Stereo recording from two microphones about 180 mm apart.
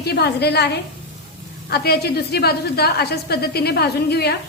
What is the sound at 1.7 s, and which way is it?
A woman's voice, 60° left (ahead or behind).